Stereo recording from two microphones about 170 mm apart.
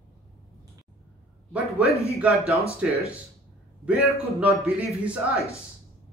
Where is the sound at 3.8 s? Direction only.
5° right (ahead or behind).